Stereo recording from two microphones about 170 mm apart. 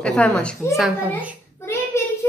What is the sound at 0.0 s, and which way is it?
A woman's voice, 5° left (ahead or behind).